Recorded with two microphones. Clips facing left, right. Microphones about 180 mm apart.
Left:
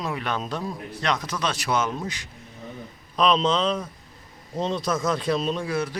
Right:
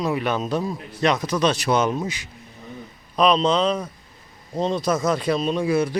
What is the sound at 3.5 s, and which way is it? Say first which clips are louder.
A man's voice: right 3 dB; centre (ahead or behind).